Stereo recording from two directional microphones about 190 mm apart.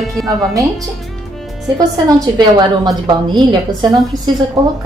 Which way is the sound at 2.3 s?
25° right (ahead or behind).